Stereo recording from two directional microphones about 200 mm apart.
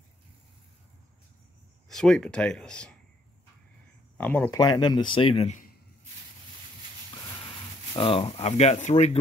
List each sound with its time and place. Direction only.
1.9 s speech: 5° left (ahead or behind)
4.2 s speech: 5° left (ahead or behind)
4.5 s speech: 20° left (ahead or behind)
7.9 s speech: 25° left (ahead or behind)